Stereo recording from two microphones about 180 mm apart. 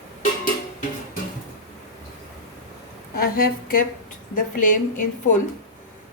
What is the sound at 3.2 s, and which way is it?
A woman's voice, 55° left (ahead or behind).